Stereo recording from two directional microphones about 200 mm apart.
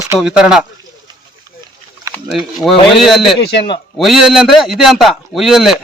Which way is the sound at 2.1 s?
Centre (ahead or behind).